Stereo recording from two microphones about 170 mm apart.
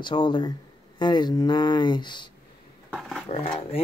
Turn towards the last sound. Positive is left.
turn(degrees=35)  # may be behind; listen again after turning